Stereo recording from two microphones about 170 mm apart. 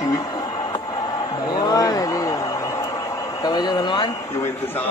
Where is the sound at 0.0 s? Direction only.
20° left (ahead or behind).